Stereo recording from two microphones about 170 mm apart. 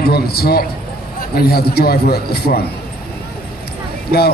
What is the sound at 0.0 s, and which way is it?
A man's voice, 70° left (ahead or behind).